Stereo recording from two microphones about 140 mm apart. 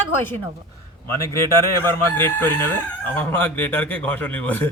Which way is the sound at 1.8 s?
15° left (ahead or behind).